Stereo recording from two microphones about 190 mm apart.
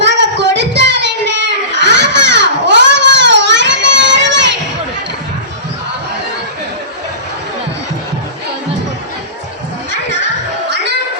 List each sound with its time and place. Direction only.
0.0 s child singing: 65° right (ahead or behind)